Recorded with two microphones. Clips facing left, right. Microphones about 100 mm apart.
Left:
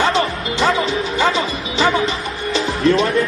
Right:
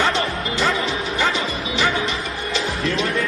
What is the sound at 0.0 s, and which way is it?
Music, 30° left (ahead or behind).